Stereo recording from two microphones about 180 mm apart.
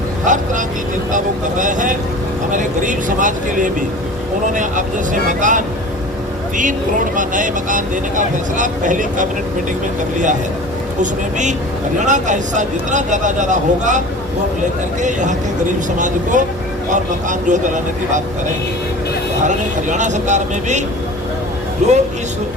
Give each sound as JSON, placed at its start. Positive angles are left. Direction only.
{"t": 0.3, "sound": "speech", "side_deg": -45}
{"t": 11.0, "sound": "speech", "side_deg": -40}
{"t": 15.0, "sound": "speech", "side_deg": -45}
{"t": 19.5, "sound": "speech", "side_deg": -45}